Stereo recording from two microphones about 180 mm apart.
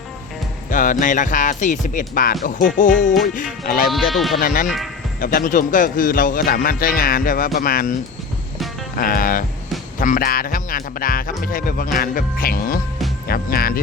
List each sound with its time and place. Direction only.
0.7 s a man's voice: 45° left (ahead or behind)
3.8 s speech: centre (ahead or behind)
4.4 s a man's voice: 45° left (ahead or behind)
9.0 s a man's voice: 50° left (ahead or behind)